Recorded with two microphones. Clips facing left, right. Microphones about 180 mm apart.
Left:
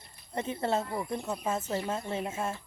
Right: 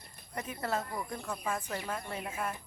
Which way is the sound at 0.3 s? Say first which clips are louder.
Left 5 dB; 25° left (ahead or behind).